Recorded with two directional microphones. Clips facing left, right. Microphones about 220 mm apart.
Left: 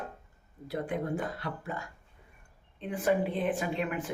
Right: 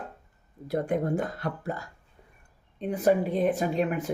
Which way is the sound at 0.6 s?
45° right (ahead or behind).